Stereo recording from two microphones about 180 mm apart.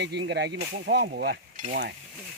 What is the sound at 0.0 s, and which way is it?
Sizzle, 75° right (ahead or behind).